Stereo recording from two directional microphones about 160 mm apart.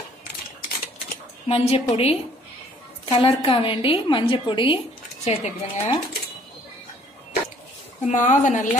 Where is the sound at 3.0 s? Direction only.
30° left (ahead or behind).